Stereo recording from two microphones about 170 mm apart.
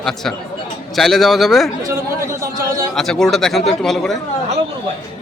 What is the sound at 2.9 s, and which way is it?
A man's voice, centre (ahead or behind).